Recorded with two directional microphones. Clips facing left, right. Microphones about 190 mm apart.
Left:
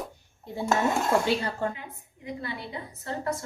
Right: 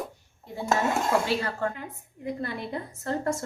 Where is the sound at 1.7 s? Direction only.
45° right (ahead or behind).